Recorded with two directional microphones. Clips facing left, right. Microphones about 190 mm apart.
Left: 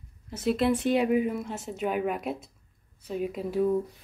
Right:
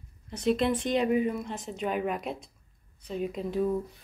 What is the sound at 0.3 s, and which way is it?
A woman's voice, 5° left (ahead or behind).